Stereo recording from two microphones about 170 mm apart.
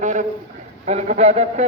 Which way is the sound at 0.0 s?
45° right (ahead or behind).